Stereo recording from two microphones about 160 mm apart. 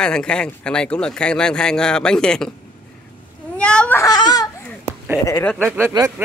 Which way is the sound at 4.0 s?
25° left (ahead or behind).